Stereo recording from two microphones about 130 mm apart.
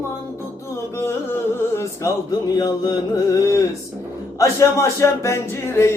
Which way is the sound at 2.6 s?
30° left (ahead or behind).